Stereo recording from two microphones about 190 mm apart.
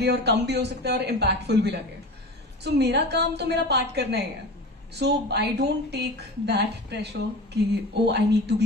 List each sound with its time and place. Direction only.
0.0 s a woman's voice: 60° right (ahead or behind)